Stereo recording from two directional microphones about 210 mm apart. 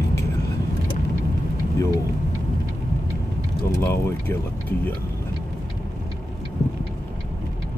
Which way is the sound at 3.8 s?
10° left (ahead or behind).